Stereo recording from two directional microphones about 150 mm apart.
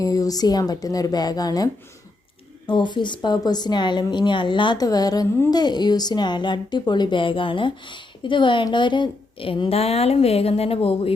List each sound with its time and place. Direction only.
0.0 s a woman's voice: 25° left (ahead or behind); by 11.1 s 40° left (ahead or behind)